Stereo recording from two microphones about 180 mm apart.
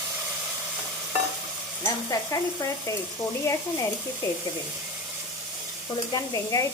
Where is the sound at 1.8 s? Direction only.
15° left (ahead or behind).